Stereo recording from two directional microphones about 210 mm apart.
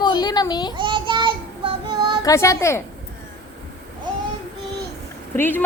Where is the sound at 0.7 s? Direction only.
25° right (ahead or behind).